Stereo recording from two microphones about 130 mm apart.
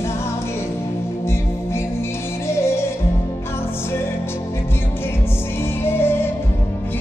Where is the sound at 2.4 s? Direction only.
20° left (ahead or behind).